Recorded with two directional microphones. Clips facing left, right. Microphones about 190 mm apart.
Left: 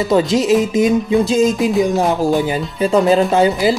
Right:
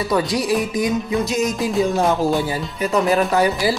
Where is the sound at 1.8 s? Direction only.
15° left (ahead or behind).